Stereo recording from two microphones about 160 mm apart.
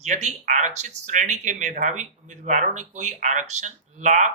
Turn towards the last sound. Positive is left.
turn(degrees=-50)  # may be behind; listen again after turning